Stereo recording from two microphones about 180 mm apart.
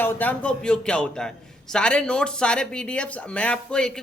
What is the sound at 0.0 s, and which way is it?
Speech, 10° left (ahead or behind).